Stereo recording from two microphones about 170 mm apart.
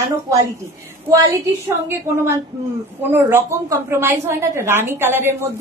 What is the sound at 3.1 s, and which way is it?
A woman's voice, 15° right (ahead or behind).